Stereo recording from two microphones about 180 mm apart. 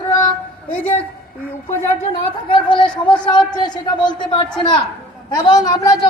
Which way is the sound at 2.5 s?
25° left (ahead or behind).